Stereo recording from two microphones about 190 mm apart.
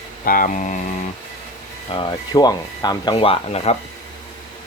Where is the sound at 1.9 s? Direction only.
25° left (ahead or behind).